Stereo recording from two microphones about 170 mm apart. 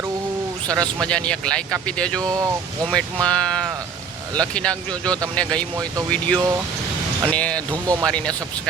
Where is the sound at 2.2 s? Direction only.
20° right (ahead or behind).